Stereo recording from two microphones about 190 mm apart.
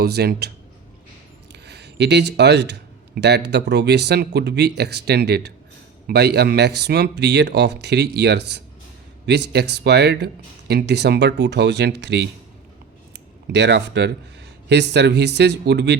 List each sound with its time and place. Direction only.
0.0 s speech: 55° right (ahead or behind)
1.5 s speech: 60° right (ahead or behind)
13.5 s speech: 65° right (ahead or behind)